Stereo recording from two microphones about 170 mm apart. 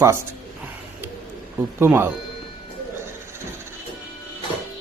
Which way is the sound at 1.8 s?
15° right (ahead or behind).